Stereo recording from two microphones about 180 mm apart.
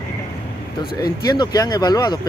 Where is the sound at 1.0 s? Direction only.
20° left (ahead or behind).